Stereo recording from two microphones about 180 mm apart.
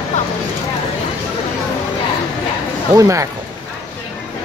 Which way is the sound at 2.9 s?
15° right (ahead or behind).